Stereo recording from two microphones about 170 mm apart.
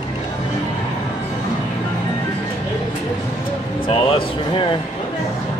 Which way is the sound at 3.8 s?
30° left (ahead or behind).